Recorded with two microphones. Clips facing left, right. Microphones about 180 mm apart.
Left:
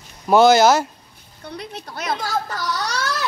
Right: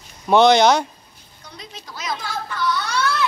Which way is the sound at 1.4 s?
60° left (ahead or behind).